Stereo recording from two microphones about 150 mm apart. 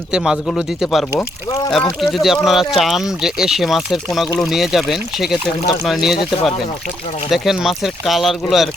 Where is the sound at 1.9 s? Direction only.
Centre (ahead or behind).